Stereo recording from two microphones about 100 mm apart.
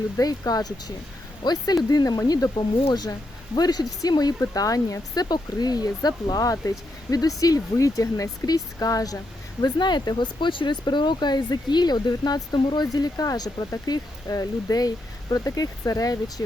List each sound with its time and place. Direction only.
0.2 s speech: 40° left (ahead or behind)
9.7 s speech: 50° left (ahead or behind)